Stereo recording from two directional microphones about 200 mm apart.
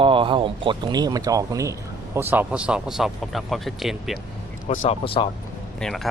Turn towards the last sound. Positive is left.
turn(degrees=0)  # may be behind; listen again after turning